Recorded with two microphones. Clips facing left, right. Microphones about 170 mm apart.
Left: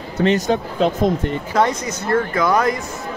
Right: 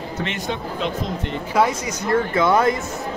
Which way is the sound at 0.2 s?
40° left (ahead or behind).